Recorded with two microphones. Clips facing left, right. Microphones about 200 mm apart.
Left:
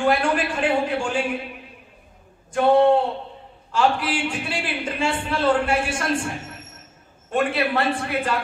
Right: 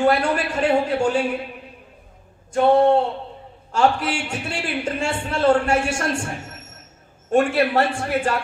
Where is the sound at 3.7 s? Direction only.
45° right (ahead or behind).